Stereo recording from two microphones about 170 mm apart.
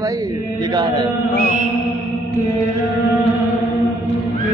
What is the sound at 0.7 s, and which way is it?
Mantra, 25° right (ahead or behind).